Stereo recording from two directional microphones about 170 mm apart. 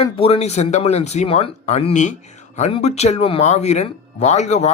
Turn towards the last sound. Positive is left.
turn(degrees=40)  # may be behind; listen again after turning